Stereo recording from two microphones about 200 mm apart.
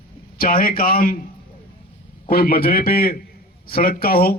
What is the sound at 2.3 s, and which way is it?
Speech, 50° left (ahead or behind).